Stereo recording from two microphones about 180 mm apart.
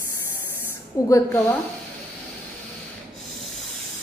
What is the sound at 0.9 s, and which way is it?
Speech, 15° left (ahead or behind).